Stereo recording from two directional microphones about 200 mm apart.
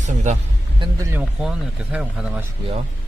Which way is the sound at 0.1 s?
35° right (ahead or behind).